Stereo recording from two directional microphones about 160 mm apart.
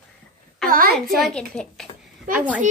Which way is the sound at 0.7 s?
65° right (ahead or behind).